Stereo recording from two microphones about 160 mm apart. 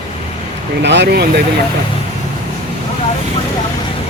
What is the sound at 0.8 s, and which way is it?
Speech, 90° right.